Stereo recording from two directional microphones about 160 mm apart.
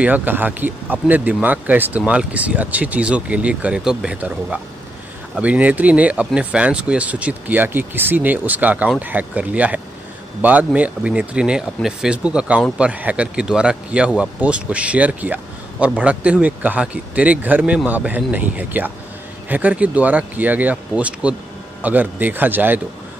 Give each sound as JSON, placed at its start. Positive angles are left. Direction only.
{"t": 0.0, "sound": "speech", "side_deg": -10}